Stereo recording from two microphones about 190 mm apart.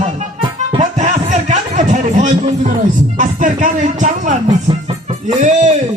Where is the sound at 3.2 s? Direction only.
40° right (ahead or behind).